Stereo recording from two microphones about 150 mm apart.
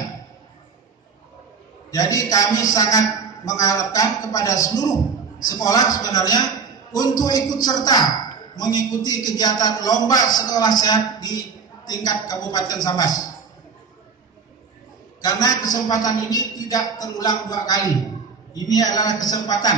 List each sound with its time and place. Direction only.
1.9 s a man's voice: 25° left (ahead or behind)
15.2 s a man's voice: 25° left (ahead or behind)